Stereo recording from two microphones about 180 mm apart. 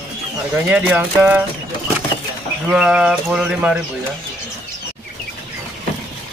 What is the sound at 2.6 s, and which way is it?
Speech, 5° right (ahead or behind).